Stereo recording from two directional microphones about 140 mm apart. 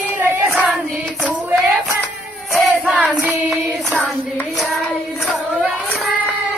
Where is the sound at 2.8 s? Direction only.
10° right (ahead or behind).